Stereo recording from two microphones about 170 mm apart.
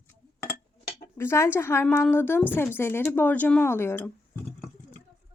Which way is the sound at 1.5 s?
15° left (ahead or behind).